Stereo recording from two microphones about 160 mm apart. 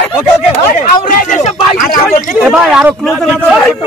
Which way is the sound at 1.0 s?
55° left (ahead or behind).